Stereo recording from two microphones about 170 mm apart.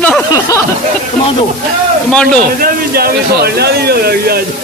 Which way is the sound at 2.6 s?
65° right (ahead or behind).